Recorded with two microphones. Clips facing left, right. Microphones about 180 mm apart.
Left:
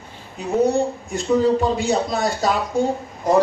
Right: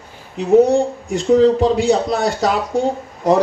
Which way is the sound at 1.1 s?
80° right.